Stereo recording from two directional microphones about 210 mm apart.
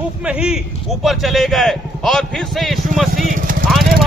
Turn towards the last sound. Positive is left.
turn(degrees=0)  # may be behind; listen again after turning